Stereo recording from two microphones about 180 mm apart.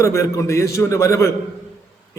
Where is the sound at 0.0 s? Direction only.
15° left (ahead or behind).